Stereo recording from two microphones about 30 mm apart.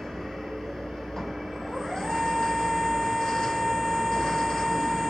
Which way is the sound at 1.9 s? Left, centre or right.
Centre.